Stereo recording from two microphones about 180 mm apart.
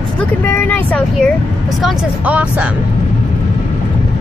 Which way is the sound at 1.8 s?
5° right (ahead or behind).